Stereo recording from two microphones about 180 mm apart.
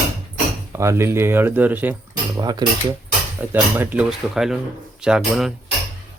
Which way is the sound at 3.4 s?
10° right (ahead or behind).